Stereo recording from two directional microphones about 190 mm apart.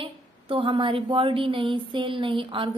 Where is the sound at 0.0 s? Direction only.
30° right (ahead or behind).